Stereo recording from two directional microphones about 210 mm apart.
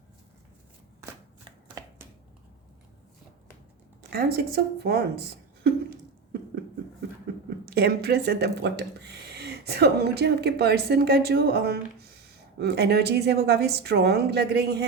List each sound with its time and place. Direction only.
1.5 s shuffling cards: 20° right (ahead or behind)
4.1 s speech: 45° right (ahead or behind)
7.6 s speech: 50° right (ahead or behind)